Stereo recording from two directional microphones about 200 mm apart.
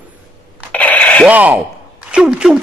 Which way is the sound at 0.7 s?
5° left (ahead or behind).